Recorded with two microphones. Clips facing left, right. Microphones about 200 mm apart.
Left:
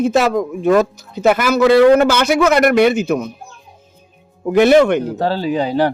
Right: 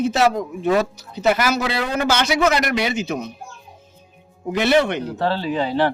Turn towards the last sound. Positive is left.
turn(degrees=40)  # may be behind; listen again after turning